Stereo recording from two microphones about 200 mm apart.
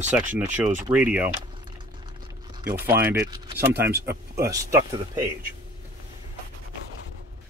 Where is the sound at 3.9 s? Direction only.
50° right (ahead or behind).